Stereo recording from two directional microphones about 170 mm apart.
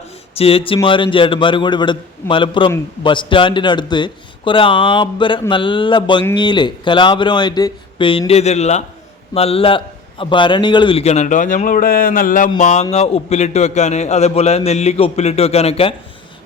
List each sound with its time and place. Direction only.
0.3 s a man's voice: 35° left (ahead or behind)